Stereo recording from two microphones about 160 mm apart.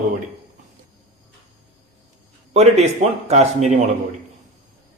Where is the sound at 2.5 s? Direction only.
45° right (ahead or behind).